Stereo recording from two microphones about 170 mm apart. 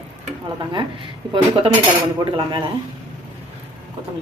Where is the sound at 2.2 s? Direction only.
30° right (ahead or behind).